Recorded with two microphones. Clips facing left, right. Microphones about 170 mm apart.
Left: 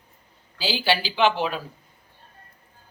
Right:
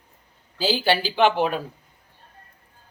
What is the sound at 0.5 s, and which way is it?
Speech, 50° right (ahead or behind).